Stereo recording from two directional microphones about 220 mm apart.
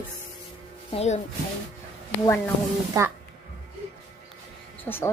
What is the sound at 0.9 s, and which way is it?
Speech, 30° left (ahead or behind).